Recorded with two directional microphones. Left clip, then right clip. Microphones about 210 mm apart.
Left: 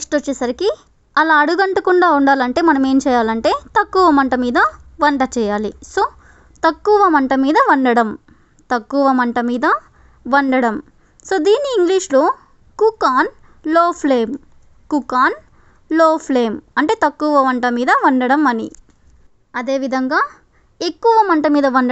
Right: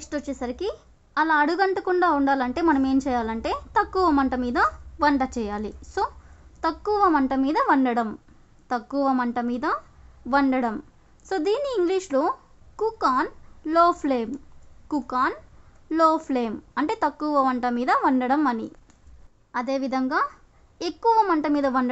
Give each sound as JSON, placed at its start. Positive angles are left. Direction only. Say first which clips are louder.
{"t": 0.0, "sound": "a woman's voice", "louder": "left 12 dB", "side_deg": 35}
{"t": 19.5, "sound": "a woman's voice", "louder": "left 7 dB", "side_deg": 20}